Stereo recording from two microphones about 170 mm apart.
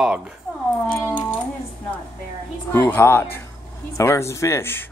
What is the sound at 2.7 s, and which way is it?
Speech, 15° left (ahead or behind).